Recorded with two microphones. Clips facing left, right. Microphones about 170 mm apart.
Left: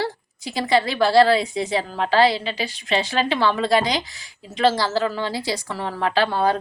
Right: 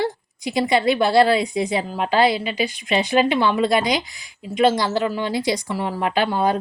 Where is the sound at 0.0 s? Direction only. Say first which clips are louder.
Right 3 dB; 15° right (ahead or behind).